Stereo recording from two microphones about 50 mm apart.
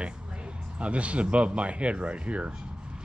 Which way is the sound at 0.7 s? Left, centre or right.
Right.